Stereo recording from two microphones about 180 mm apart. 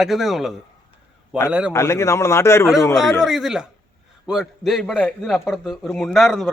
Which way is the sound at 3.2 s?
Centre (ahead or behind).